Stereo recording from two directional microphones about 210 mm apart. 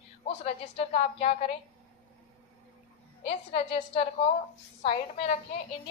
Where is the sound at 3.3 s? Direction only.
30° left (ahead or behind).